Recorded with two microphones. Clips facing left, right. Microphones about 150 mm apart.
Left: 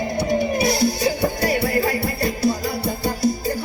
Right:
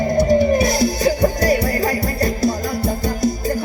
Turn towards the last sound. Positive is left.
turn(degrees=-45)  # may be behind; listen again after turning